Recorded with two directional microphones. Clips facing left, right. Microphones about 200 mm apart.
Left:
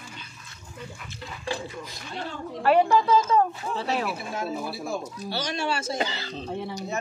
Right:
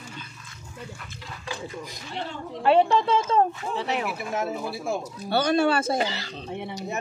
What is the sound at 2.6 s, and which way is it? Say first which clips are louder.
Speech: even; 25° right (ahead or behind).